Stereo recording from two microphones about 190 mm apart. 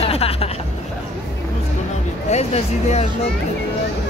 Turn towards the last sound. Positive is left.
turn(degrees=35)  # may be behind; listen again after turning